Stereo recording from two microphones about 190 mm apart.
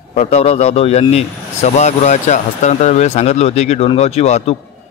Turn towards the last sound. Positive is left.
turn(degrees=35)  # may be behind; listen again after turning